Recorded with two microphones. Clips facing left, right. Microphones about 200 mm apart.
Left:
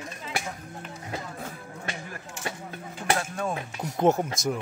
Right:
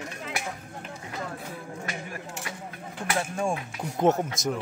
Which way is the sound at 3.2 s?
10° right (ahead or behind).